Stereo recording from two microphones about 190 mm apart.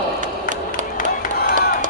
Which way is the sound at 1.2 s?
50° left (ahead or behind).